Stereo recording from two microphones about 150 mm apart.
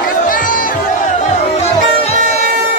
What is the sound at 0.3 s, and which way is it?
Music, 65° left (ahead or behind).